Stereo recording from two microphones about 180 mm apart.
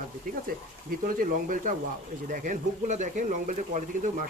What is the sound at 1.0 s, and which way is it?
Speech, 50° right (ahead or behind).